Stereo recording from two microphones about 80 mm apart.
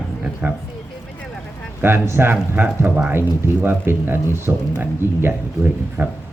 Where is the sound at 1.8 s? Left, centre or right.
Right.